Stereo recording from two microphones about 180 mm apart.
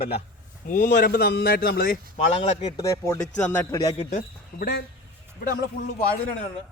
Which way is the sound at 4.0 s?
45° left (ahead or behind).